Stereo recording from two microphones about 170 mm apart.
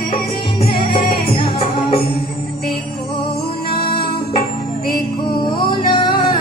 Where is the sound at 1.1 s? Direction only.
30° left (ahead or behind).